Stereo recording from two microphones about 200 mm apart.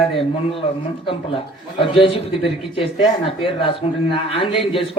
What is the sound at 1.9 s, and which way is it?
Speech, 25° left (ahead or behind).